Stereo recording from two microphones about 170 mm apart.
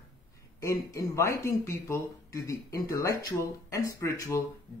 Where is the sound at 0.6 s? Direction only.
20° left (ahead or behind).